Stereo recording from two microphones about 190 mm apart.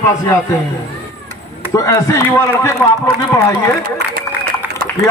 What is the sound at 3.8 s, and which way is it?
Speech, 55° right (ahead or behind).